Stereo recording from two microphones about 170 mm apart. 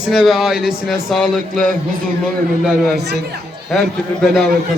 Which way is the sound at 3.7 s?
Centre (ahead or behind).